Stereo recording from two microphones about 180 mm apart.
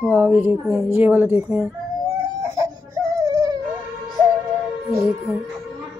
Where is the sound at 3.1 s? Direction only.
20° right (ahead or behind).